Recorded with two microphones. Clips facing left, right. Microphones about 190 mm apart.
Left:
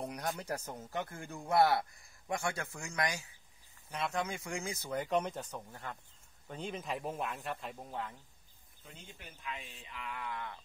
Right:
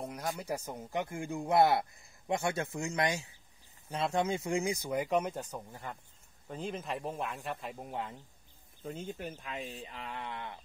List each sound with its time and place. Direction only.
0.0 s speech: centre (ahead or behind)
7.7 s speech: 15° right (ahead or behind)
8.8 s speech: 45° right (ahead or behind); by 10.6 s 25° right (ahead or behind)